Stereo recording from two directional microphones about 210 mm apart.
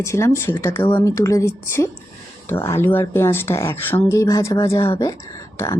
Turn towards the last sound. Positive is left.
turn(degrees=15)  # may be behind; listen again after turning